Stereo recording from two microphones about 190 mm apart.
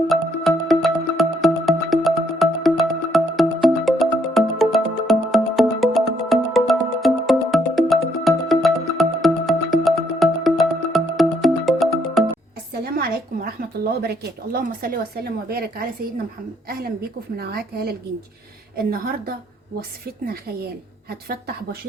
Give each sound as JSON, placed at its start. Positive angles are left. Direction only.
{"t": 0.1, "sound": "music", "side_deg": 0}
{"t": 12.7, "sound": "a woman's voice", "side_deg": -50}